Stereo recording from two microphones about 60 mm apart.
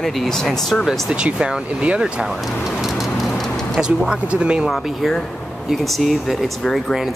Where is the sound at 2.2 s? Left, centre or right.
Centre.